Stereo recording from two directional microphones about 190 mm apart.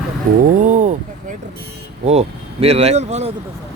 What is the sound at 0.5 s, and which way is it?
Speech, 40° right (ahead or behind).